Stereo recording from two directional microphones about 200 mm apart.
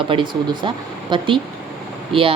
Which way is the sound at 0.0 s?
25° right (ahead or behind).